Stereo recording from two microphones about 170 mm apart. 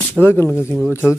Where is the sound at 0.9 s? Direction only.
15° left (ahead or behind).